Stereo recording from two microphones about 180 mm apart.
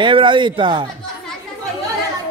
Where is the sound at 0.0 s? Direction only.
25° right (ahead or behind).